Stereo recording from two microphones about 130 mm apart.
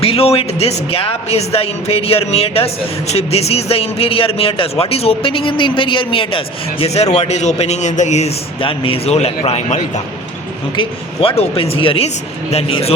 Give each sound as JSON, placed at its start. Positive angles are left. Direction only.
{"t": 0.0, "sound": "a man's voice", "side_deg": 50}
{"t": 8.6, "sound": "a man's voice", "side_deg": 45}
{"t": 10.8, "sound": "a man's voice", "side_deg": 45}